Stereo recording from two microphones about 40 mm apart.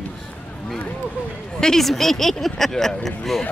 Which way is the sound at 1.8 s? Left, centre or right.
Centre.